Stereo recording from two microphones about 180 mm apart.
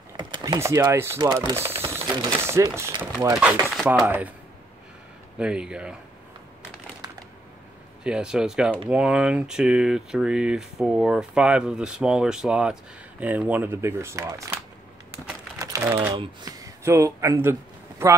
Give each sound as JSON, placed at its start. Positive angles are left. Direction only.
{"t": 0.2, "sound": "speech", "side_deg": -25}
{"t": 3.8, "sound": "speech", "side_deg": -15}
{"t": 5.4, "sound": "speech", "side_deg": -5}
{"t": 8.0, "sound": "speech", "side_deg": -5}
{"t": 15.6, "sound": "typing", "side_deg": -20}
{"t": 16.2, "sound": "speech", "side_deg": -20}